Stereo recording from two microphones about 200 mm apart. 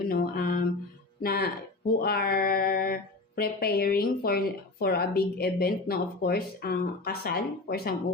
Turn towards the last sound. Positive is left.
turn(degrees=50)  # may be behind; listen again after turning